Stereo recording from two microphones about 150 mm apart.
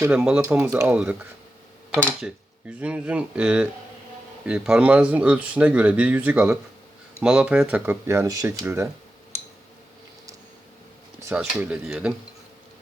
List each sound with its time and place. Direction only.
0.0 s speech: 5° right (ahead or behind)
0.7 s speech: 20° right (ahead or behind)
2.2 s speech: 10° right (ahead or behind)
8.0 s speech: 20° right (ahead or behind)
11.3 s speech: 10° right (ahead or behind)